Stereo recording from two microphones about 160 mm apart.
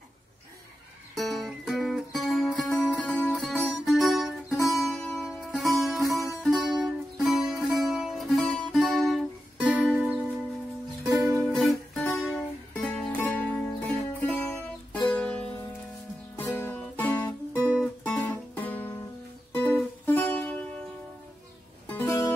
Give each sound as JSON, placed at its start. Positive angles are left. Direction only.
{"t": 1.1, "sound": "music", "side_deg": 0}
{"t": 11.1, "sound": "music", "side_deg": -20}
{"t": 11.5, "sound": "music", "side_deg": 0}
{"t": 21.8, "sound": "music", "side_deg": 15}